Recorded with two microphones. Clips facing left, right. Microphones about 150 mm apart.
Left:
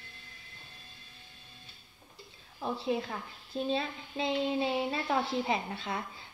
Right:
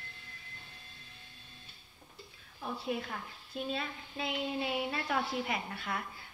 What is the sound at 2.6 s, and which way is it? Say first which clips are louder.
A woman's voice: left 4 dB; 30° left (ahead or behind).